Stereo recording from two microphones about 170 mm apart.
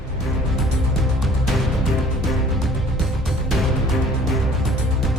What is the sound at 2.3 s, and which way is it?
Music, centre (ahead or behind).